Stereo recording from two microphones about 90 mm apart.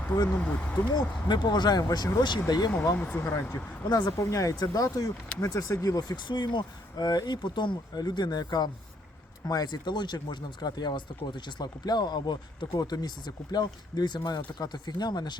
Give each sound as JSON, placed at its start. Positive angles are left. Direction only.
{"t": 0.3, "sound": "speech", "side_deg": 15}
{"t": 0.9, "sound": "speech", "side_deg": 50}
{"t": 2.9, "sound": "speech", "side_deg": 20}
{"t": 3.8, "sound": "speech", "side_deg": 45}